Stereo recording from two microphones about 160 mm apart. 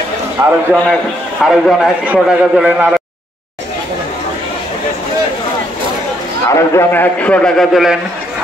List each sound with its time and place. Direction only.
0.4 s a man's voice: 20° right (ahead or behind)
1.4 s a man's voice: centre (ahead or behind)
6.4 s a man's voice: 20° left (ahead or behind); by 8.0 s centre (ahead or behind)